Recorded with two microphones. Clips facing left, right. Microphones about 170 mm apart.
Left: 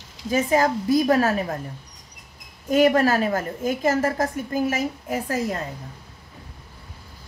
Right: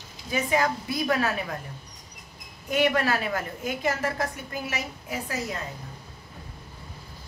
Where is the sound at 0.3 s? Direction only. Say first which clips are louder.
Left 5 dB; 40° left (ahead or behind).